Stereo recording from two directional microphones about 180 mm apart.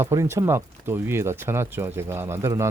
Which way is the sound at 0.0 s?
15° right (ahead or behind).